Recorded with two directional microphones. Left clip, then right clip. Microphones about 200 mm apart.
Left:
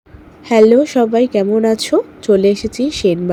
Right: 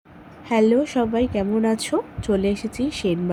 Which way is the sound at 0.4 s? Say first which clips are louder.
Left 9 dB; 20° left (ahead or behind).